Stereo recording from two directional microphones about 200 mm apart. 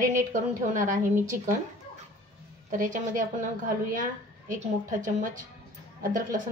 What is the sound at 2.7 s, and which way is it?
A woman's voice, 40° right (ahead or behind).